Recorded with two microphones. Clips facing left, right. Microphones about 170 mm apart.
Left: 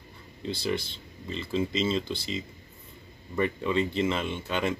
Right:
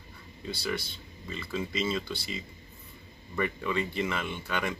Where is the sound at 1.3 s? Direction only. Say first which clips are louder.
Left 5 dB; 25° left (ahead or behind).